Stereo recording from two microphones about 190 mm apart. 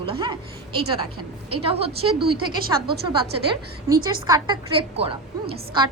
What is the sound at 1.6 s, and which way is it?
Speech, 30° right (ahead or behind).